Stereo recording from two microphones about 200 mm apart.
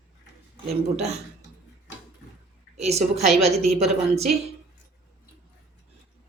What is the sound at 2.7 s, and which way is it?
Speech, 30° right (ahead or behind).